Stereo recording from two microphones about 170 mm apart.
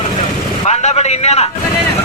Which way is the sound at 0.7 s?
40° left (ahead or behind).